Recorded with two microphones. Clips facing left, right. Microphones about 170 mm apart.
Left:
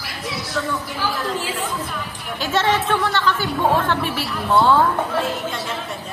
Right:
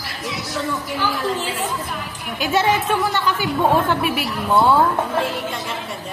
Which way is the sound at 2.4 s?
10° right (ahead or behind).